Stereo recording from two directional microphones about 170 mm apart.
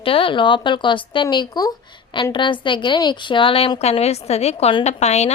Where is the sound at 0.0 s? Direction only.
30° left (ahead or behind).